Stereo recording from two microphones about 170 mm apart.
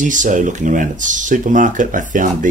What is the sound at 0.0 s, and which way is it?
Speech, 50° right (ahead or behind).